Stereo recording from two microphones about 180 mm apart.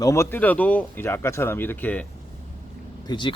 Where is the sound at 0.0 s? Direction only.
15° left (ahead or behind).